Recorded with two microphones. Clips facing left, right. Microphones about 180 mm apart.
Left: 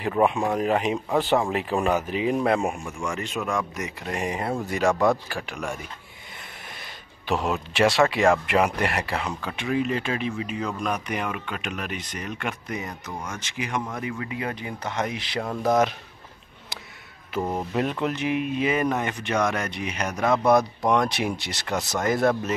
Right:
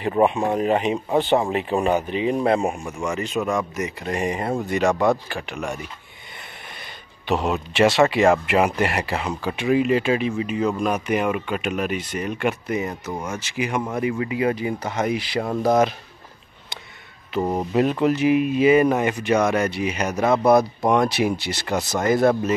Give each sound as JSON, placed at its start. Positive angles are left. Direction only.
{"t": 0.2, "sound": "speech", "side_deg": -5}
{"t": 1.5, "sound": "speech", "side_deg": 0}
{"t": 2.4, "sound": "speech", "side_deg": -30}
{"t": 3.1, "sound": "speech", "side_deg": 0}
{"t": 7.2, "sound": "speech", "side_deg": 0}
{"t": 17.4, "sound": "speech", "side_deg": -15}
{"t": 17.7, "sound": "speech", "side_deg": -5}